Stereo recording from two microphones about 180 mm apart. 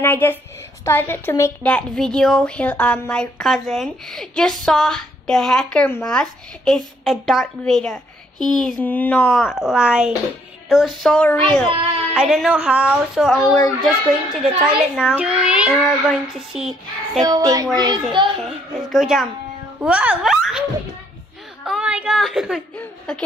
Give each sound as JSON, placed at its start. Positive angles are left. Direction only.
{"t": 0.0, "sound": "a woman's voice", "side_deg": 10}
{"t": 17.2, "sound": "a child's voice", "side_deg": -20}
{"t": 18.4, "sound": "speech", "side_deg": 0}
{"t": 21.6, "sound": "speech", "side_deg": -5}